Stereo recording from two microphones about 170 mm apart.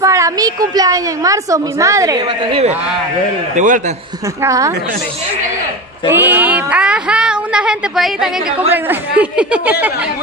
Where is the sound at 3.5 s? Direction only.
50° right (ahead or behind).